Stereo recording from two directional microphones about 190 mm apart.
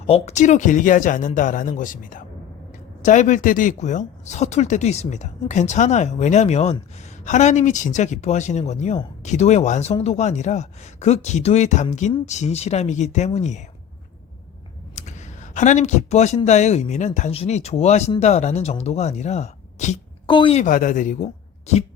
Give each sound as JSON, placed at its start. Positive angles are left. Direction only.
{"t": 0.1, "sound": "speech", "side_deg": 35}
{"t": 14.9, "sound": "speech", "side_deg": 40}
{"t": 20.2, "sound": "a woman's voice", "side_deg": 25}
{"t": 20.7, "sound": "speech", "side_deg": 45}